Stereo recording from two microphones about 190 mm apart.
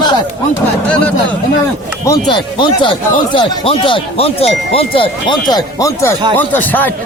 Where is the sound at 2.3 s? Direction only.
25° left (ahead or behind).